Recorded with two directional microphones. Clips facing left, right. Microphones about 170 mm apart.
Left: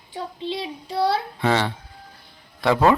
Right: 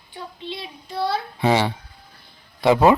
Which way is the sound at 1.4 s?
10° right (ahead or behind).